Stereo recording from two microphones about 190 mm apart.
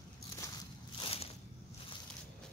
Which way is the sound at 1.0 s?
30° left (ahead or behind).